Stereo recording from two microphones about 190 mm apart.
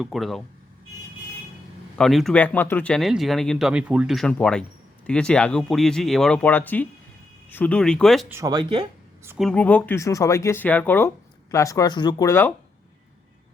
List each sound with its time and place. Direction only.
0.0 s speech: centre (ahead or behind)
2.0 s speech: centre (ahead or behind)
8.3 s speech: 20° right (ahead or behind)
9.4 s speech: 5° left (ahead or behind)